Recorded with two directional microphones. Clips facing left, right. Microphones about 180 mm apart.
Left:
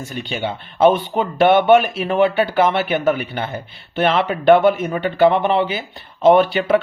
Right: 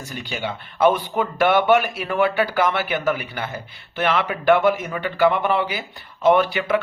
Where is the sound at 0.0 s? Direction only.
25° left (ahead or behind).